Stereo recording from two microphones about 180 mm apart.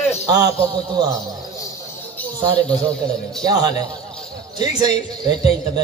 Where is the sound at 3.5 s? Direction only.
20° right (ahead or behind).